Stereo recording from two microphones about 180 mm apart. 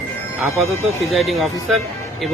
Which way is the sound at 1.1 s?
Centre (ahead or behind).